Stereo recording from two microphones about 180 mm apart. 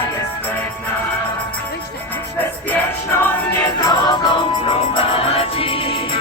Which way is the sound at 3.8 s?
25° left (ahead or behind).